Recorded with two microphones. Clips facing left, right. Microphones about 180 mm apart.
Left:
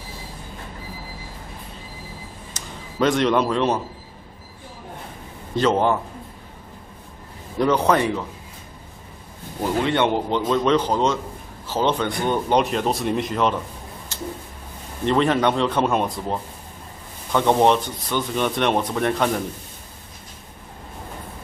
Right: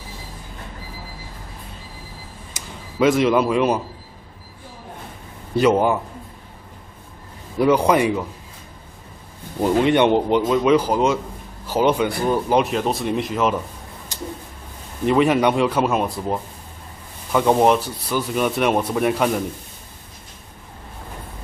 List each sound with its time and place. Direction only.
2.5 s speech: 5° right (ahead or behind)
5.6 s a man's voice: 10° right (ahead or behind)
7.5 s a man's voice: 10° right (ahead or behind)
9.6 s a man's voice: 15° right (ahead or behind)
14.1 s a sound: 15° right (ahead or behind)
15.0 s a man's voice: 10° right (ahead or behind)